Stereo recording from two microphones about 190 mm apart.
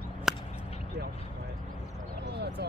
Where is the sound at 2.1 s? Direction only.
60° right (ahead or behind).